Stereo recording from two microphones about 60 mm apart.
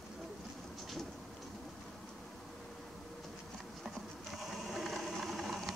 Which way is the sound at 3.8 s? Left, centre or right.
Centre.